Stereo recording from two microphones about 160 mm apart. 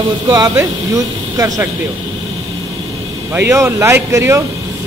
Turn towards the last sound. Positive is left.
turn(degrees=-15)  # may be behind; listen again after turning